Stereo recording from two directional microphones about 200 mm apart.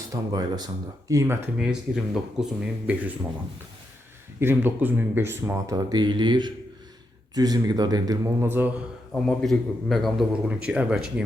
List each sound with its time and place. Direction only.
0.1 s a man's voice: 20° right (ahead or behind); by 2.9 s 5° right (ahead or behind)
4.4 s speech: 10° right (ahead or behind)
9.2 s a man's voice: centre (ahead or behind)